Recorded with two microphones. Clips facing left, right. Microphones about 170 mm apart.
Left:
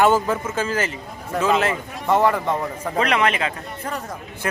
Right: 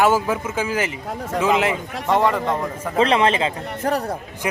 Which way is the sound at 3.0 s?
30° right (ahead or behind).